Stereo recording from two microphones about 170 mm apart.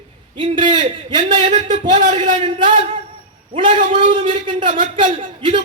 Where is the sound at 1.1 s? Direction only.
45° right (ahead or behind).